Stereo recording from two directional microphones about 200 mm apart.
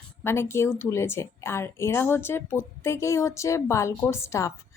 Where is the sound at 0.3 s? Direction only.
10° left (ahead or behind).